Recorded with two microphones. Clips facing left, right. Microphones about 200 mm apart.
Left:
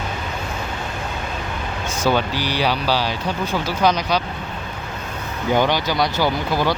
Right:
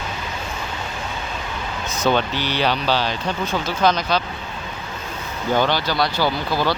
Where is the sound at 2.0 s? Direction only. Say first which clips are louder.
Even; 10° left (ahead or behind).